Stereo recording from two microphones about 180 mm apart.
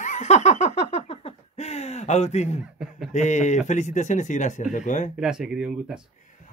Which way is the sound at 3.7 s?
40° left (ahead or behind).